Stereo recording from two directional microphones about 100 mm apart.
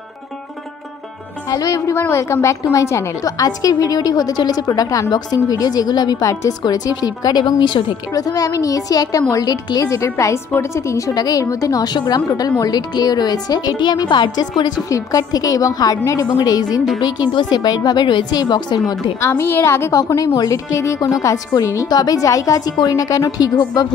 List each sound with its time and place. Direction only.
1.5 s a woman's voice: 35° left (ahead or behind)
8.1 s a woman's voice: 35° left (ahead or behind)
19.2 s a woman's voice: 25° left (ahead or behind); by 23.9 s 40° left (ahead or behind)